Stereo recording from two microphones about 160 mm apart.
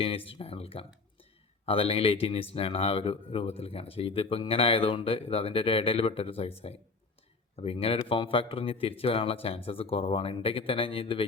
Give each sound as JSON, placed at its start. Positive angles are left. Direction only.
{"t": 0.0, "sound": "speech", "side_deg": 35}
{"t": 7.5, "sound": "speech", "side_deg": 35}